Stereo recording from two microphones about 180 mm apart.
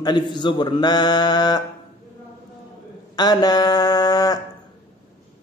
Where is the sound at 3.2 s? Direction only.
25° left (ahead or behind).